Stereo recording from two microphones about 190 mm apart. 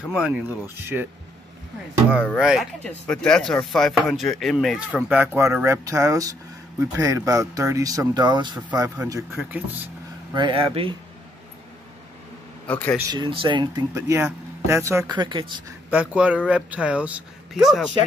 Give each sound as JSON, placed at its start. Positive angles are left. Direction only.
{"t": 0.1, "sound": "speech", "side_deg": -5}
{"t": 2.0, "sound": "speech", "side_deg": -5}
{"t": 10.3, "sound": "speech", "side_deg": -25}
{"t": 12.6, "sound": "a man's voice", "side_deg": 5}
{"t": 13.1, "sound": "speech", "side_deg": -25}
{"t": 15.9, "sound": "speech", "side_deg": -5}